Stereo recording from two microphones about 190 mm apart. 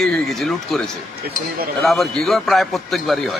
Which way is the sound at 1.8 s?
Centre (ahead or behind).